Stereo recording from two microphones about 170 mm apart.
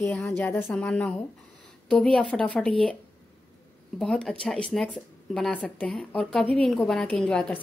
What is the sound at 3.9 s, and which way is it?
Speech, 5° left (ahead or behind).